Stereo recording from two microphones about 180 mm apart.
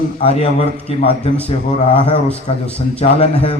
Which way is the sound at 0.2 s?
35° left (ahead or behind).